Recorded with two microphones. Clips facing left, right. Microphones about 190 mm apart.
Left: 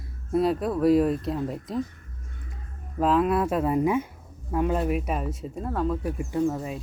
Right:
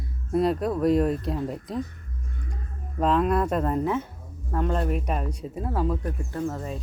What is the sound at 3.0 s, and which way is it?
Speech, 5° left (ahead or behind).